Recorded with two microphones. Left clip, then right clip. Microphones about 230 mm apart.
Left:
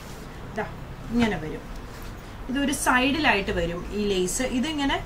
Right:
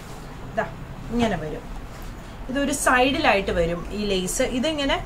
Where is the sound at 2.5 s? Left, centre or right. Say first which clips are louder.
Right 3 dB; centre; by 5.0 s right.